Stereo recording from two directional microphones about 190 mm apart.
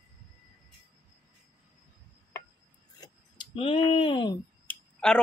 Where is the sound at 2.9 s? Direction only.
20° left (ahead or behind).